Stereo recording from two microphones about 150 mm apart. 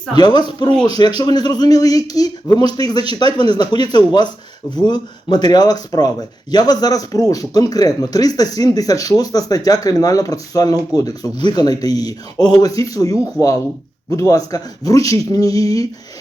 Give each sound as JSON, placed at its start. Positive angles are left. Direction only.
{"t": 0.1, "sound": "speech", "side_deg": 30}